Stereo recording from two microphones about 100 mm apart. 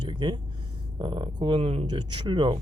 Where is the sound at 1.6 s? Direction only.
85° right.